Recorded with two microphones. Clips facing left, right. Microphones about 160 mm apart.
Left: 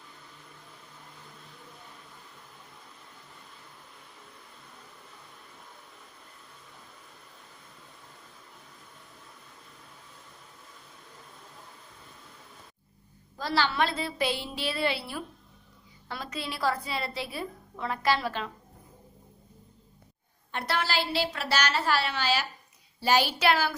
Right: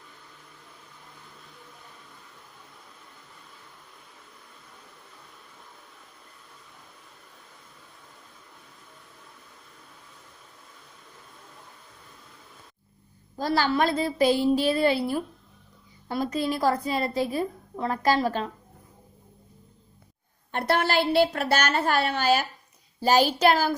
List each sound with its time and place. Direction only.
13.3 s a woman's voice: 45° right (ahead or behind)
20.5 s a woman's voice: 50° right (ahead or behind)